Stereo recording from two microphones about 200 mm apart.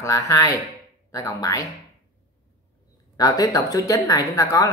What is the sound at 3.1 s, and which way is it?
Speech, 20° left (ahead or behind).